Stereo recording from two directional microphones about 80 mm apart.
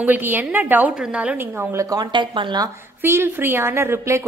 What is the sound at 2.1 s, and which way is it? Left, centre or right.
Speech, right.